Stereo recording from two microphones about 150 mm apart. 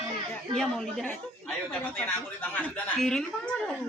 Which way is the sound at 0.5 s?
Centre (ahead or behind).